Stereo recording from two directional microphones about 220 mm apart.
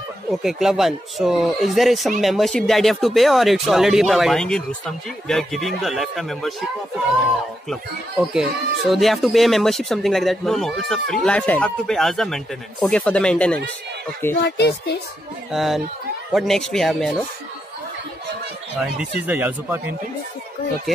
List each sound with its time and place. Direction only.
0.3 s speech: centre (ahead or behind)
7.7 s speech: 5° right (ahead or behind)
14.4 s speech: 50° left (ahead or behind)
15.5 s speech: centre (ahead or behind)
19.2 s speech: 5° right (ahead or behind)